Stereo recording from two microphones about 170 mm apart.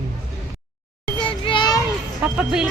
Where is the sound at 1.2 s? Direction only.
30° left (ahead or behind).